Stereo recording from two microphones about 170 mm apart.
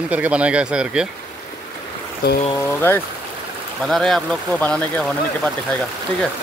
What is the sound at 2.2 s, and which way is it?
Speech, 65° left (ahead or behind).